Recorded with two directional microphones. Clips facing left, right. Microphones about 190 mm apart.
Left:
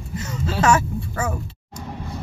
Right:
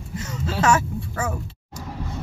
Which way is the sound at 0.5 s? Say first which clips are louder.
Left 2 dB; 15° left (ahead or behind).